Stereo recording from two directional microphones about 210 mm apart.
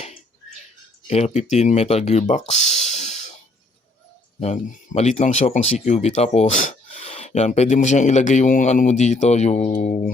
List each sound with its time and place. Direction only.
1.0 s speech: 30° left (ahead or behind)
4.4 s speech: 35° left (ahead or behind)